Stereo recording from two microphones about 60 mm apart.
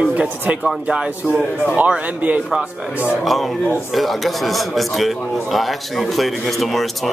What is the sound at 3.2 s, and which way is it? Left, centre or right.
A man's voice, centre.